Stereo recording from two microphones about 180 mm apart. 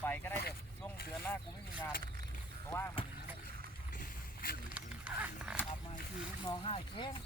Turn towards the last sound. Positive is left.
turn(degrees=30)  # may be behind; listen again after turning